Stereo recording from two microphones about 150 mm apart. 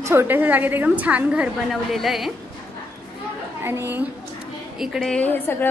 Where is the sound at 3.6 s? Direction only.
15° right (ahead or behind).